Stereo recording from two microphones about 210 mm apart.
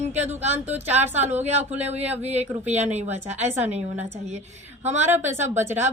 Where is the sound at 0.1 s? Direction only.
30° right (ahead or behind).